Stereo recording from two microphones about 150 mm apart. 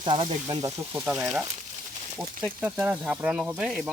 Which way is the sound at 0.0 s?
30° right (ahead or behind).